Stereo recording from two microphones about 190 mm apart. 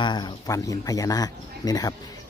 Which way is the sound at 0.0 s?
25° left (ahead or behind).